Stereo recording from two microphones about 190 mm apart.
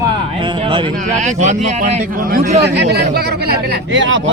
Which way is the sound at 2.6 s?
60° right (ahead or behind).